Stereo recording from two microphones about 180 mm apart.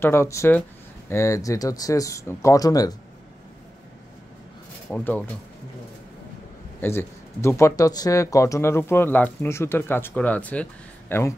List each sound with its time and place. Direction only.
0.0 s speech: 15° left (ahead or behind)
4.8 s speech: 5° left (ahead or behind)
6.8 s speech: 15° left (ahead or behind)